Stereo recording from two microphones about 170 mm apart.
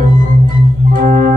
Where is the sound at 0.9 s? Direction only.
50° right (ahead or behind).